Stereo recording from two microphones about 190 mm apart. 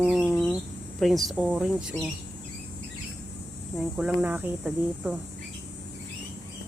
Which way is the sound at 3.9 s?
5° right (ahead or behind).